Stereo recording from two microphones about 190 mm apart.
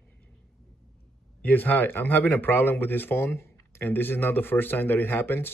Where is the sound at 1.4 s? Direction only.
10° left (ahead or behind).